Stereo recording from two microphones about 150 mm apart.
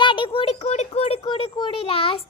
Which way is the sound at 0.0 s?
35° left (ahead or behind).